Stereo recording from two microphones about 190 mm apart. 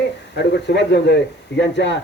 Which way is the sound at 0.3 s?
65° left (ahead or behind).